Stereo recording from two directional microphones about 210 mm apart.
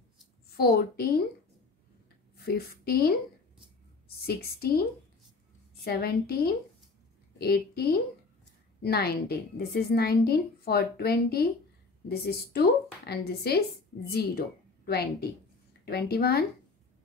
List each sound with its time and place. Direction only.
0.6 s a woman's voice: 50° left (ahead or behind)
2.3 s a sound: 45° left (ahead or behind)
4.3 s a woman's voice: 45° left (ahead or behind)
5.9 s a woman's voice: 50° left (ahead or behind)
14.9 s a woman's voice: 50° left (ahead or behind)